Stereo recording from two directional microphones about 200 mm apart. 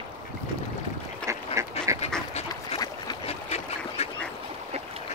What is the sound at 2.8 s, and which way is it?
Boat, 20° left (ahead or behind).